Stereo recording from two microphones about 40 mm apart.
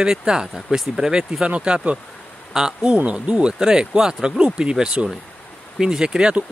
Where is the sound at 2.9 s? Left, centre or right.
Right.